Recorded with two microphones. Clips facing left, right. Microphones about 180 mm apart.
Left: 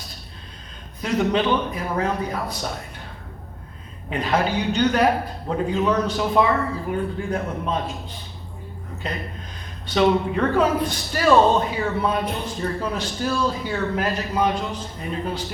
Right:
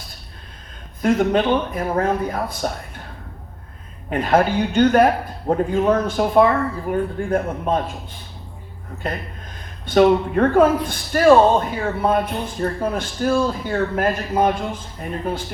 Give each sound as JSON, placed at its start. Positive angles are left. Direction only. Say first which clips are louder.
{"t": 1.0, "sound": "speech", "louder": "right 4 dB", "side_deg": -50}
{"t": 4.1, "sound": "speech", "louder": "right 5 dB", "side_deg": -50}
{"t": 9.0, "sound": "speech", "louder": "right 3 dB", "side_deg": -55}